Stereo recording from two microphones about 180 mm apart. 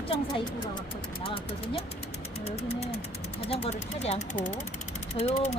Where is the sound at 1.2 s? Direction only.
30° left (ahead or behind).